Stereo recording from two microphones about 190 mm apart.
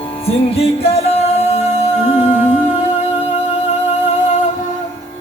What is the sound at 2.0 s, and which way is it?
Humming, 35° left (ahead or behind).